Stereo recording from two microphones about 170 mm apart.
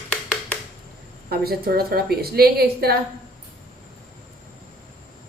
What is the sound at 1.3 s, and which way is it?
A woman's voice, 65° right (ahead or behind).